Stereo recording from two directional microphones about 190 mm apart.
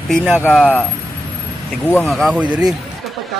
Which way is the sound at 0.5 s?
5° left (ahead or behind).